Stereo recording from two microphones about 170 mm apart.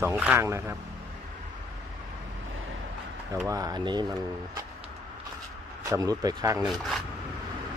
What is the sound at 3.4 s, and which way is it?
Speech, 20° right (ahead or behind).